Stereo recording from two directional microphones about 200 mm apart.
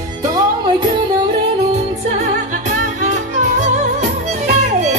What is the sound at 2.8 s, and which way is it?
Music, 35° right (ahead or behind).